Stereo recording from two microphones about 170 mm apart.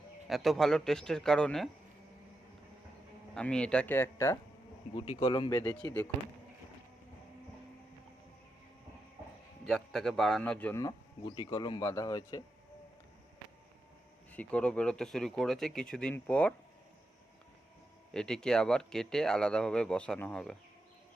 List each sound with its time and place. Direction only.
0.3 s speech: centre (ahead or behind)
3.3 s speech: 5° left (ahead or behind)
4.9 s speech: 25° left (ahead or behind)
5.5 s speech: 10° left (ahead or behind)
9.6 s speech: centre (ahead or behind); by 12.4 s 20° left (ahead or behind)
14.3 s speech: 5° left (ahead or behind)
18.1 s speech: 5° left (ahead or behind)